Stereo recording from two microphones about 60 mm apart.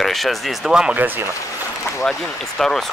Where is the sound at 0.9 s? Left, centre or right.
Right.